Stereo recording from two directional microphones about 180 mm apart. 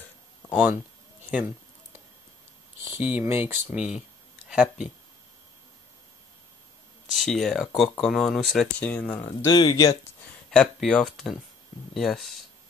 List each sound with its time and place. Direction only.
0.5 s speech: 10° right (ahead or behind)
3.0 s speech: 10° right (ahead or behind)
7.1 s speech: centre (ahead or behind)
9.5 s speech: 20° left (ahead or behind)
10.5 s speech: 5° left (ahead or behind)